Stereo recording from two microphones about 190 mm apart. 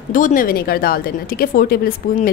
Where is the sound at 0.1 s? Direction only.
45° left (ahead or behind).